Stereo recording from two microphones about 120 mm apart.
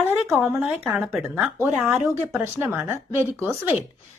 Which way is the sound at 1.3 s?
15° right (ahead or behind).